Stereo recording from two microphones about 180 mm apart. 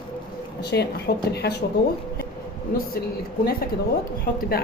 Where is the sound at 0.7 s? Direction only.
80° left.